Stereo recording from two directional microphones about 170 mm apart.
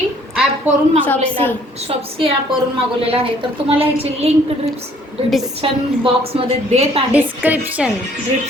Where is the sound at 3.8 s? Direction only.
35° right (ahead or behind).